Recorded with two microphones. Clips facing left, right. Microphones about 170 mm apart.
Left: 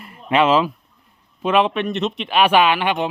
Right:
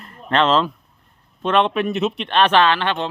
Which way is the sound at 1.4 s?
5° left (ahead or behind).